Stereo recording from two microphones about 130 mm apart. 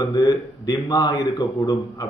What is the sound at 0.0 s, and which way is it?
A man's voice, 30° left (ahead or behind).